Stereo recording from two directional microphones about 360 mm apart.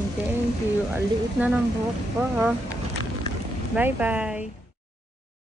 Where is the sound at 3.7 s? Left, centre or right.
Centre.